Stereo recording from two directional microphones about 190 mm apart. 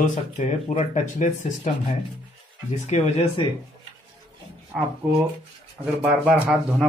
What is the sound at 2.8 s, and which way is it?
Speech, 35° left (ahead or behind).